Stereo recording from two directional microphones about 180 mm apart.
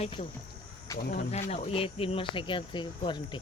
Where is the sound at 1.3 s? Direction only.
35° left (ahead or behind).